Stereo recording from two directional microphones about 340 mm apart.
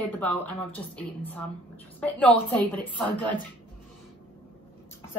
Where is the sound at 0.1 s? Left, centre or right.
Centre.